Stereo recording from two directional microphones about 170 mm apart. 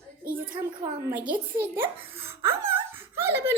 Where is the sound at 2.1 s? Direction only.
15° right (ahead or behind).